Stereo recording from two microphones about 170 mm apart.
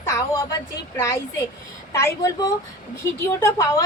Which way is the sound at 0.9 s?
15° left (ahead or behind).